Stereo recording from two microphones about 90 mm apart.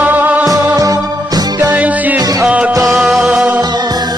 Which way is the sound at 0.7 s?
45° right (ahead or behind).